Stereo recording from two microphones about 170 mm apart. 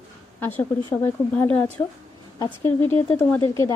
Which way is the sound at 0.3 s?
10° left (ahead or behind).